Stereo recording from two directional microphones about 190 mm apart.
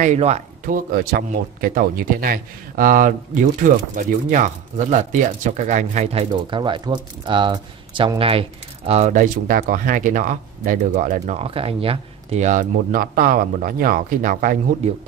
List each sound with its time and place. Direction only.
0.0 s speech: 35° right (ahead or behind)